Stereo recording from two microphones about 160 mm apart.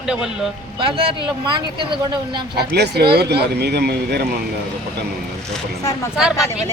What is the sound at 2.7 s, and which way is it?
Speech, 90° right.